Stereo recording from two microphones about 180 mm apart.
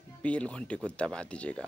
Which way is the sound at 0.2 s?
5° left (ahead or behind).